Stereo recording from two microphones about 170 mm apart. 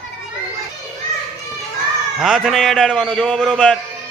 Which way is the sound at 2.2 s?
Centre (ahead or behind).